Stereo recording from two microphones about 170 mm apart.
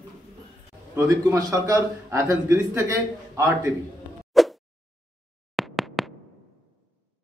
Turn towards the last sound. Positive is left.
turn(degrees=0)  # may be behind; listen again after turning